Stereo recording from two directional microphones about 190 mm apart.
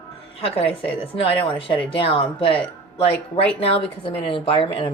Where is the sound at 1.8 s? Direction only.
25° left (ahead or behind).